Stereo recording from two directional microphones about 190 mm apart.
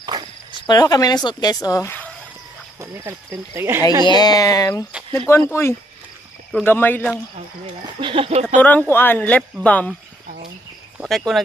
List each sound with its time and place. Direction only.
0.6 s speech: 20° left (ahead or behind)
2.8 s speech: 15° right (ahead or behind)
4.0 s speech: 20° left (ahead or behind)
8.0 s speech: 25° right (ahead or behind)
8.5 s speech: 10° left (ahead or behind)
11.0 s speech: centre (ahead or behind)